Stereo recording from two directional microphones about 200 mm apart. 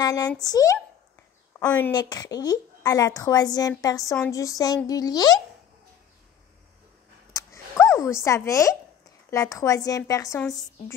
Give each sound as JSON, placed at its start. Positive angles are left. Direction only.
{"t": 0.0, "sound": "a woman's voice", "side_deg": 20}
{"t": 1.6, "sound": "speech", "side_deg": 5}
{"t": 1.9, "sound": "a woman's voice", "side_deg": 20}
{"t": 7.3, "sound": "a sound", "side_deg": 15}
{"t": 9.3, "sound": "a woman's voice", "side_deg": 15}